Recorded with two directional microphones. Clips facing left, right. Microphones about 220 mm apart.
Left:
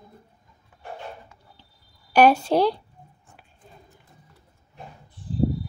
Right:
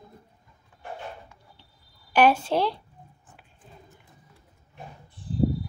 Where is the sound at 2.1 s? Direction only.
40° left (ahead or behind).